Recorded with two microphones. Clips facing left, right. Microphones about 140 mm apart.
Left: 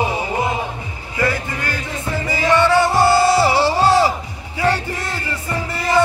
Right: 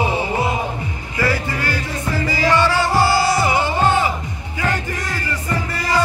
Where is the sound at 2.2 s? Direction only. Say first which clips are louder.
Left 2 dB; 20° left (ahead or behind).